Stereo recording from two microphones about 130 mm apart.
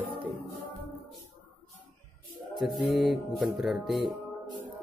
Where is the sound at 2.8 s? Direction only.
Centre (ahead or behind).